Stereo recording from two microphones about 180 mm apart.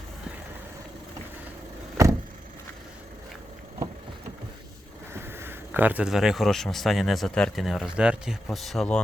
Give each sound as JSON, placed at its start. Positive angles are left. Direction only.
{"t": 2.0, "sound": "vehicle", "side_deg": -20}
{"t": 5.1, "sound": "speech", "side_deg": -15}